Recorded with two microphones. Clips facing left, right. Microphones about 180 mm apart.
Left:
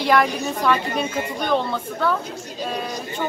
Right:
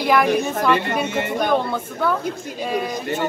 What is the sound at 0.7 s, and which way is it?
Speech, 65° right (ahead or behind).